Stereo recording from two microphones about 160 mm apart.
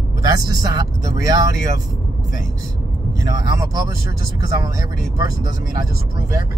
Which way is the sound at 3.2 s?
20° right (ahead or behind).